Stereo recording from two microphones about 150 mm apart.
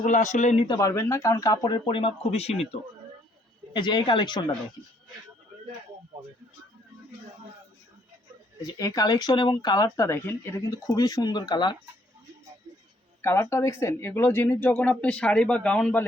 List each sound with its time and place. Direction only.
0.0 s speech: 55° left (ahead or behind)
0.5 s speech: 35° left (ahead or behind)
0.8 s speech: 20° left (ahead or behind); by 2.6 s 40° left (ahead or behind)
3.7 s speech: 30° left (ahead or behind)
8.6 s speech: 25° left (ahead or behind)
13.2 s speech: 20° left (ahead or behind)